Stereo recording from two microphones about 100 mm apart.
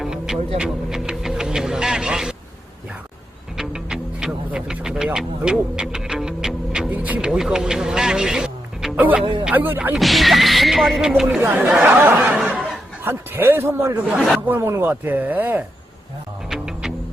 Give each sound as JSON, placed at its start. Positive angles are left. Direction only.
{"t": 0.0, "sound": "music", "side_deg": -5}
{"t": 3.6, "sound": "music", "side_deg": -5}
{"t": 6.9, "sound": "speech", "side_deg": -15}
{"t": 9.9, "sound": "speech", "side_deg": 0}
{"t": 11.3, "sound": "speech", "side_deg": -20}
{"t": 16.5, "sound": "music", "side_deg": -5}